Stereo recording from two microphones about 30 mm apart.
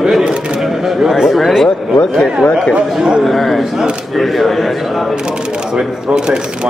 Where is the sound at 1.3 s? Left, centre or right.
Centre.